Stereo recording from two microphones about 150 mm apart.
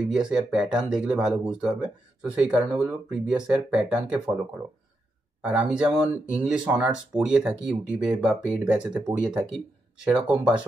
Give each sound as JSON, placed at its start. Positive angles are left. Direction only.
{"t": 0.0, "sound": "speech", "side_deg": -5}
{"t": 5.4, "sound": "speech", "side_deg": -5}